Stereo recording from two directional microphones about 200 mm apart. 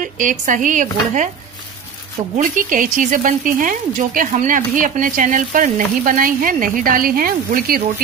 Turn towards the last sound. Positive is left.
turn(degrees=-45)  # may be behind; listen again after turning